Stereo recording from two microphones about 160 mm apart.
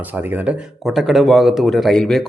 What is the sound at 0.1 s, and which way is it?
Speech, 10° right (ahead or behind).